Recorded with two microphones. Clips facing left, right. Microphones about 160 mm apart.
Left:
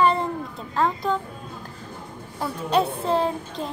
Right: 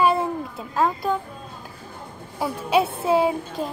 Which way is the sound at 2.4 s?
5° right (ahead or behind).